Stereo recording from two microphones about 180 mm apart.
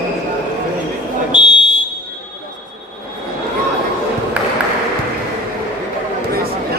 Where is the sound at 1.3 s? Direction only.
25° left (ahead or behind).